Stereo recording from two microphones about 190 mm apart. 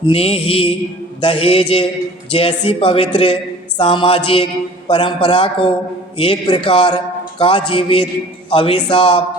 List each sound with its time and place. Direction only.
0.0 s a man's voice: 30° left (ahead or behind)